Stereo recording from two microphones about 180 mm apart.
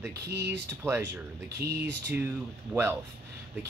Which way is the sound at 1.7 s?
65° right (ahead or behind).